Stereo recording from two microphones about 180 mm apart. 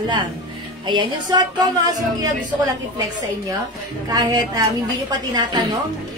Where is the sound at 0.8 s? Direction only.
25° right (ahead or behind).